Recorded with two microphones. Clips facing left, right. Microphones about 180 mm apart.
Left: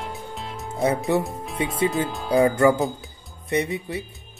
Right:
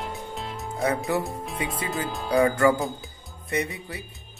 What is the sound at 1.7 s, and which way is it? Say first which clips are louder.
Speech: left 6 dB; centre (ahead or behind).